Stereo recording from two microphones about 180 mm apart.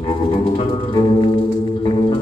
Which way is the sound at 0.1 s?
25° left (ahead or behind).